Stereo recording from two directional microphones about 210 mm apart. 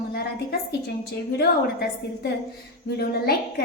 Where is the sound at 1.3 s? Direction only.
50° left (ahead or behind).